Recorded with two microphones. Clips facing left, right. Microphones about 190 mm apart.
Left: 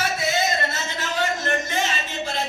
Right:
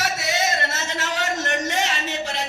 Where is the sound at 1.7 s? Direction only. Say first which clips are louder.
Right 1 dB; 75° right (ahead or behind).